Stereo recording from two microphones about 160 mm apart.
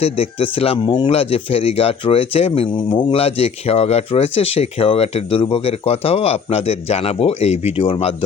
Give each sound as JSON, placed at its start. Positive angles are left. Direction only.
{"t": 0.0, "sound": "speech", "side_deg": 40}